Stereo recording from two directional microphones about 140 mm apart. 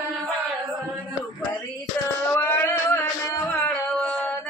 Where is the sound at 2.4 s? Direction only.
15° left (ahead or behind).